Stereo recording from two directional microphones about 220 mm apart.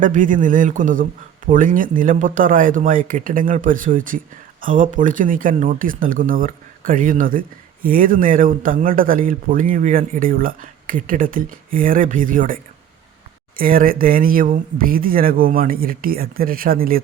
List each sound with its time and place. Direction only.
0.0 s speech: 35° right (ahead or behind)
13.6 s speech: 40° right (ahead or behind)